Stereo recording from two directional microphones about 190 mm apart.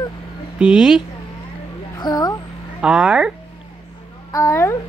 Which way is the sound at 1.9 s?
20° left (ahead or behind).